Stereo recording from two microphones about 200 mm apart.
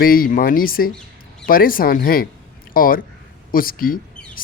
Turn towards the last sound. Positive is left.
turn(degrees=45)  # may be behind; listen again after turning